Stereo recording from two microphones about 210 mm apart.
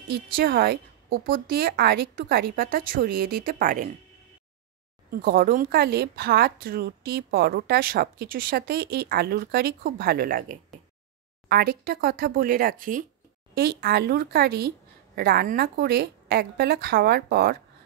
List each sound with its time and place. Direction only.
0.1 s speech: 45° right (ahead or behind)
5.1 s speech: 45° right (ahead or behind)